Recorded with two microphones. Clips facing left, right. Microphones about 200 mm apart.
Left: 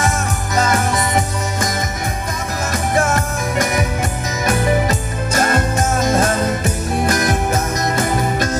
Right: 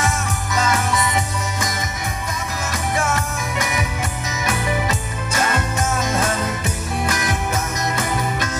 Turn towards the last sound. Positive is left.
turn(degrees=40)  # may be behind; listen again after turning